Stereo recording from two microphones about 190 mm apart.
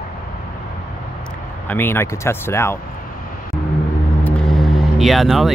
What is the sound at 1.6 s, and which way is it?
Speech, 10° left (ahead or behind).